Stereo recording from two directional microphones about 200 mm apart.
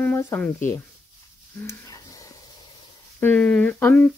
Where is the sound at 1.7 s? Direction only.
15° left (ahead or behind).